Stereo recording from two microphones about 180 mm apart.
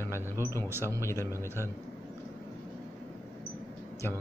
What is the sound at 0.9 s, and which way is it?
Speech, 15° left (ahead or behind).